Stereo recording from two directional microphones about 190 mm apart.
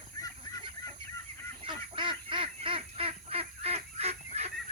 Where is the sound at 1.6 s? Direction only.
25° right (ahead or behind).